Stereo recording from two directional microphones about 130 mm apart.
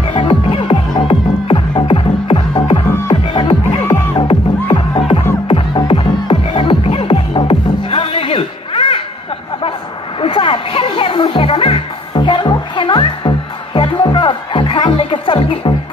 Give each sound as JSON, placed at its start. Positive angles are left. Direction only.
{"t": 0.0, "sound": "music", "side_deg": 45}
{"t": 10.2, "sound": "music", "side_deg": 40}